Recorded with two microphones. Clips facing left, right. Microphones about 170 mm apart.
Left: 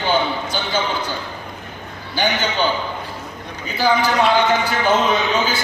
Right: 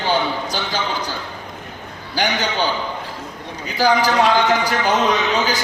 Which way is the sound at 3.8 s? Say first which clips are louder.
Right 1 dB; 40° right (ahead or behind).